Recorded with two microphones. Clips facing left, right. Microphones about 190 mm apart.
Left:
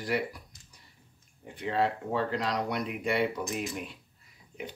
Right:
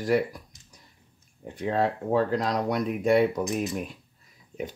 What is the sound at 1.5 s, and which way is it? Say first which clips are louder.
Speech: right 3 dB; 45° right (ahead or behind).